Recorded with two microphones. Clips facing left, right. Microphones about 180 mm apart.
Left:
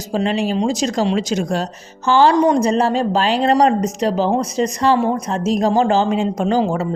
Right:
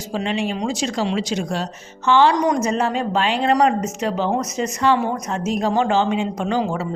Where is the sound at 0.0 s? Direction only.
40° left (ahead or behind).